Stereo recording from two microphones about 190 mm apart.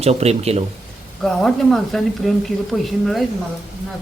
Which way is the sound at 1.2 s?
Centre (ahead or behind).